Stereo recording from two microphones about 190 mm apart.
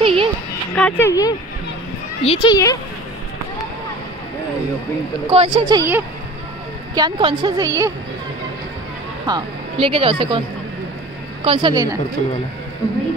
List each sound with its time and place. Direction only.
0.0 s a sound: 30° right (ahead or behind)
0.7 s speech: 10° left (ahead or behind)
5.3 s a woman's voice: 30° right (ahead or behind)
5.8 s speech: 10° right (ahead or behind)
7.0 s a woman's voice: 25° right (ahead or behind)
9.2 s speech: 25° right (ahead or behind)
11.4 s a woman's voice: 25° right (ahead or behind)